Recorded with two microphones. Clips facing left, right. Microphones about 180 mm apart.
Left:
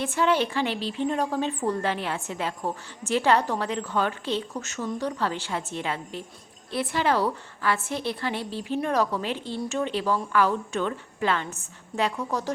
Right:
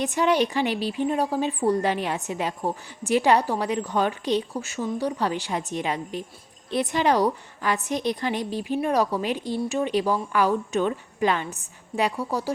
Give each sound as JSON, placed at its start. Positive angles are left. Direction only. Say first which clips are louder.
{"t": 0.0, "sound": "a woman's voice", "louder": "right 2 dB", "side_deg": -15}